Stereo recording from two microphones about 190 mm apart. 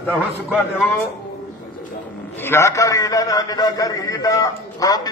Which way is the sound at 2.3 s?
10° left (ahead or behind).